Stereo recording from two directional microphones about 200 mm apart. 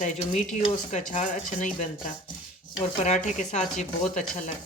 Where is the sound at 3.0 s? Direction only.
35° left (ahead or behind).